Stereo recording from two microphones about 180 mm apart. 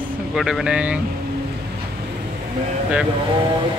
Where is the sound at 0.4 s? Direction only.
5° right (ahead or behind).